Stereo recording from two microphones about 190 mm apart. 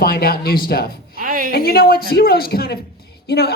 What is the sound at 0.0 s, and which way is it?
A man's voice, 50° left (ahead or behind).